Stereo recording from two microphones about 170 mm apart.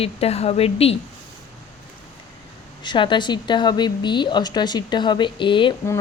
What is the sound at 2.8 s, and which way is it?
Speech, 25° left (ahead or behind).